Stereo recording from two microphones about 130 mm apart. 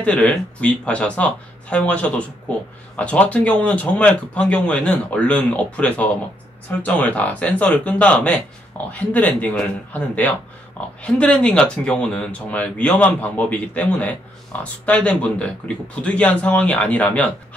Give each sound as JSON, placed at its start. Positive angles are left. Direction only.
{"t": 0.0, "sound": "speech", "side_deg": 5}